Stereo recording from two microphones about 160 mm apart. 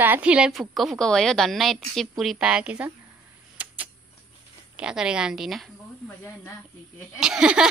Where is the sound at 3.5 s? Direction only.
10° right (ahead or behind).